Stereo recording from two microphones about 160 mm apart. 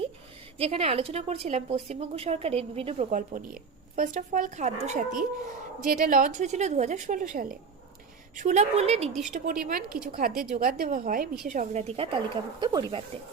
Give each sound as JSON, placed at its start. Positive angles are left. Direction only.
{"t": 0.6, "sound": "a woman's voice", "side_deg": -40}
{"t": 3.1, "sound": "speech", "side_deg": -55}
{"t": 5.9, "sound": "speech", "side_deg": -60}
{"t": 8.4, "sound": "a woman's voice", "side_deg": -50}
{"t": 9.3, "sound": "a woman's voice", "side_deg": -55}
{"t": 11.5, "sound": "a woman's voice", "side_deg": -50}